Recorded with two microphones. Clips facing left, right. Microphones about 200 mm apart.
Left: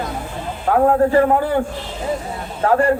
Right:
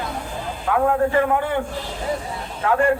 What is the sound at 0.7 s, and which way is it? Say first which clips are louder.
A man's voice: left 5 dB; 35° left (ahead or behind).